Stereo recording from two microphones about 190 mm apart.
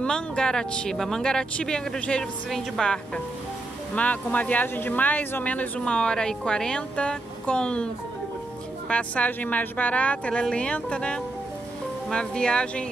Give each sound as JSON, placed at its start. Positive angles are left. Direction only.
{"t": 0.0, "sound": "speech", "side_deg": 5}